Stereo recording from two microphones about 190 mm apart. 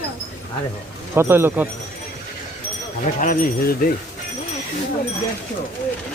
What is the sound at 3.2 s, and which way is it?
Speech, 45° left (ahead or behind).